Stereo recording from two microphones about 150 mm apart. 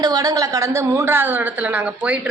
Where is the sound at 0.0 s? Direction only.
25° right (ahead or behind).